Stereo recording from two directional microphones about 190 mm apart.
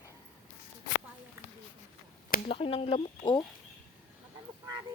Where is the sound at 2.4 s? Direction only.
30° left (ahead or behind).